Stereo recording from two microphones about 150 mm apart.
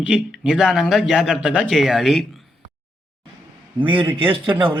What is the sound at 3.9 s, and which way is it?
Speech, 35° right (ahead or behind).